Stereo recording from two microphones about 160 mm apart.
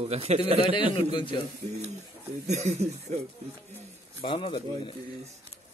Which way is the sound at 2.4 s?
45° right (ahead or behind).